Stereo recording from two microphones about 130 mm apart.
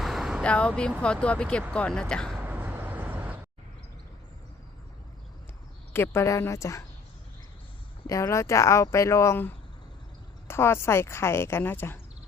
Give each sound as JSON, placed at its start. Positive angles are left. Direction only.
{"t": 0.0, "sound": "vehicle", "side_deg": 0}
{"t": 0.4, "sound": "speech", "side_deg": 10}
{"t": 2.4, "sound": "vehicle", "side_deg": -15}
{"t": 5.9, "sound": "speech", "side_deg": 20}
{"t": 8.0, "sound": "speech", "side_deg": 25}